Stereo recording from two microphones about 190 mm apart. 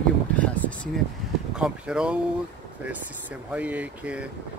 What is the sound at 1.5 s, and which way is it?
Speech, 5° right (ahead or behind).